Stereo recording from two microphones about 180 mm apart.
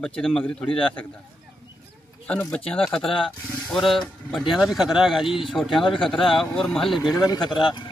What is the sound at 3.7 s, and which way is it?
A man's voice, centre (ahead or behind).